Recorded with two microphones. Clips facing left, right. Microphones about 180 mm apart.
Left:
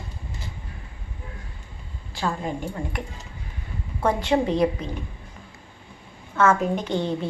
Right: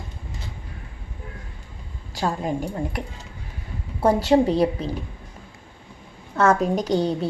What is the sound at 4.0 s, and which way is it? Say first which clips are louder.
Speech: right 4 dB; 35° right (ahead or behind).